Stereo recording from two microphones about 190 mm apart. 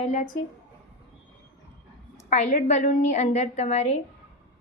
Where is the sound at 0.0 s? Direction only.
40° left (ahead or behind).